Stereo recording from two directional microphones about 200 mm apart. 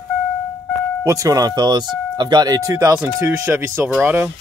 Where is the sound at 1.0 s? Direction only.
15° right (ahead or behind).